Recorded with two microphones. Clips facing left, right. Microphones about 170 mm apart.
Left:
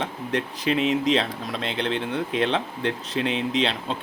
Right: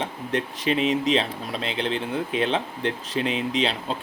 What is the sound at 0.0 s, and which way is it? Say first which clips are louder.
Speech: even; 30° right (ahead or behind).